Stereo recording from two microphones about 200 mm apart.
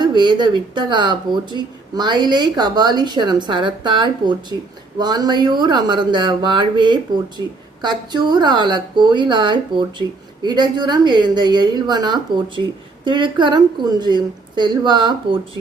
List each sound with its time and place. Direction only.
0.0 s speech: 20° right (ahead or behind)